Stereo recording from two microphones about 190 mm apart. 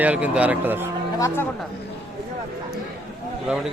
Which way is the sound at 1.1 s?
15° left (ahead or behind).